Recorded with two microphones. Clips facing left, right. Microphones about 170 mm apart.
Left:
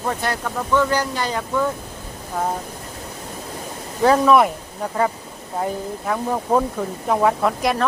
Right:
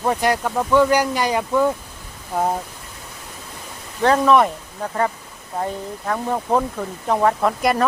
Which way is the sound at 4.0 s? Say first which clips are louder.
Left 1 dB; 5° left (ahead or behind).